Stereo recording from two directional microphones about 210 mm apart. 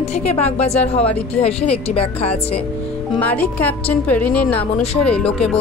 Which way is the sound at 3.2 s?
10° left (ahead or behind).